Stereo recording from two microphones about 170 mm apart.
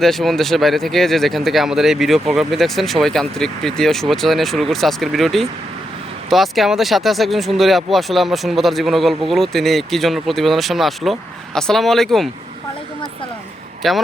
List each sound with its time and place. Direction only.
0.0 s speech: centre (ahead or behind)
13.8 s speech: centre (ahead or behind)